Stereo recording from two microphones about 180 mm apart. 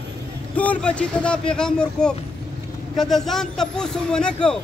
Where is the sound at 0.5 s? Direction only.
5° left (ahead or behind).